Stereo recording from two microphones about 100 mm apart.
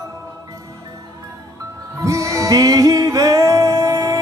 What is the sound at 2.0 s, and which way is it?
Music, 30° right (ahead or behind).